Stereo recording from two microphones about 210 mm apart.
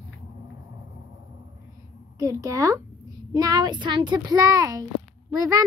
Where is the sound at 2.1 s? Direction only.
15° right (ahead or behind).